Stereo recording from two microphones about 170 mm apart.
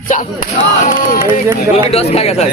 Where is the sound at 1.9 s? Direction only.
35° left (ahead or behind).